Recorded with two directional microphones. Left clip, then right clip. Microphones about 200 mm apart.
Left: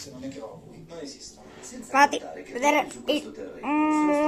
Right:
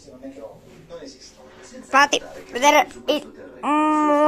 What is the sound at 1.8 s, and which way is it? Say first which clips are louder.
A woman's voice: right 4 dB; 30° right (ahead or behind).